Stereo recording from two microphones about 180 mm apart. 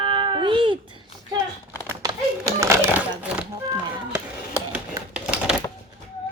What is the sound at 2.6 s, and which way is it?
Crumpling, 15° right (ahead or behind).